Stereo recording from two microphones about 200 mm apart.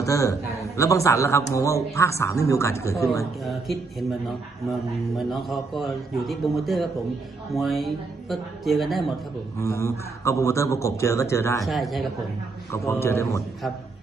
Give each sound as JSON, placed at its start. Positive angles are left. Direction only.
{"t": 0.0, "sound": "a man's voice", "side_deg": 15}
{"t": 3.4, "sound": "a man's voice", "side_deg": 0}
{"t": 9.6, "sound": "a man's voice", "side_deg": 15}
{"t": 11.6, "sound": "a man's voice", "side_deg": 0}
{"t": 12.7, "sound": "a man's voice", "side_deg": 15}